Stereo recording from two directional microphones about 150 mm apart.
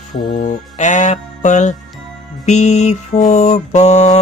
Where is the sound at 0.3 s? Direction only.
55° left (ahead or behind).